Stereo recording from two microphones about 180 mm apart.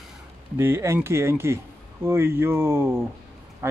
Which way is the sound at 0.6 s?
15° right (ahead or behind).